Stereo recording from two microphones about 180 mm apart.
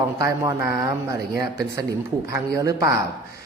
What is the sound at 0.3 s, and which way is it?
Speech, 15° right (ahead or behind).